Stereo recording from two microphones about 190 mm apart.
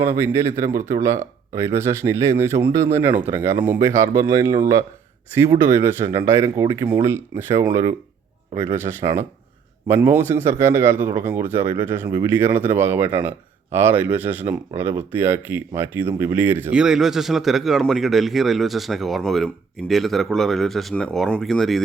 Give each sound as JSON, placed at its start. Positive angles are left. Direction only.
{"t": 0.0, "sound": "speech", "side_deg": -15}